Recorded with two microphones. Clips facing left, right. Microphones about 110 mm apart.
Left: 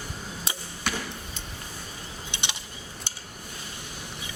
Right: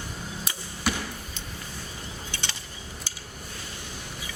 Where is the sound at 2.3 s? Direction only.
20° left (ahead or behind).